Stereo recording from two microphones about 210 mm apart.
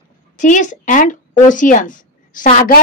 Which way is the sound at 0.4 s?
35° left (ahead or behind).